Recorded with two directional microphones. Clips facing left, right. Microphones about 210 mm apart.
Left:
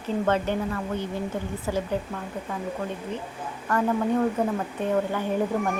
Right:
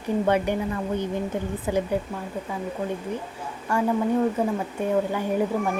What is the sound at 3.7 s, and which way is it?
Speech, 10° right (ahead or behind).